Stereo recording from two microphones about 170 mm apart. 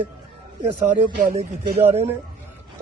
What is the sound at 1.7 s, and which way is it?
Speech, 40° right (ahead or behind).